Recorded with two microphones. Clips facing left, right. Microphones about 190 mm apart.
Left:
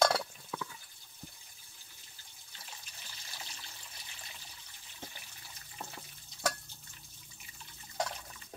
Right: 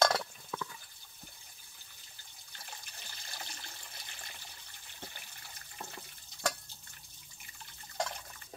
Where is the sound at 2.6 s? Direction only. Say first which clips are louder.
Right 2 dB; 55° right (ahead or behind).